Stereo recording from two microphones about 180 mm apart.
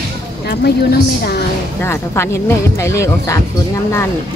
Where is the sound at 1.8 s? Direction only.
15° left (ahead or behind).